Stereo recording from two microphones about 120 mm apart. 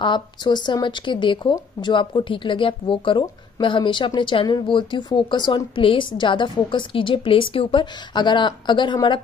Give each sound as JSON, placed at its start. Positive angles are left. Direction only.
{"t": 0.0, "sound": "speech", "side_deg": 40}